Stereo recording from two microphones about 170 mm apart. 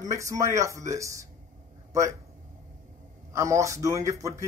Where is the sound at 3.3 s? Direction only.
15° right (ahead or behind).